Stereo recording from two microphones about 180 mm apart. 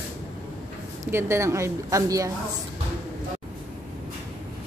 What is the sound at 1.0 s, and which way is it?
Speech, 15° right (ahead or behind).